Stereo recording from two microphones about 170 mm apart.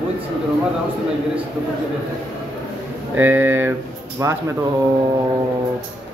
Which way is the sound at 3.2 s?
15° right (ahead or behind).